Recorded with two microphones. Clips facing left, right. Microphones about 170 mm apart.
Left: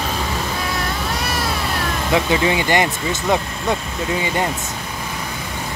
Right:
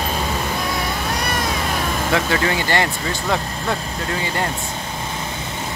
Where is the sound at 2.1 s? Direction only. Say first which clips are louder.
Left 3 dB; 15° left (ahead or behind).